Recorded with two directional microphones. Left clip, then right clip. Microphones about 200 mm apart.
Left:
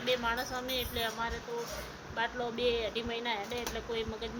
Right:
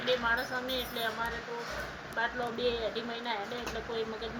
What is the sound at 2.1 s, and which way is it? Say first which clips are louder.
Speech: right 1 dB; 25° left (ahead or behind).